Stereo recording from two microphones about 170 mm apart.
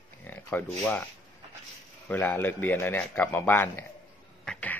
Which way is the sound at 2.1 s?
10° left (ahead or behind).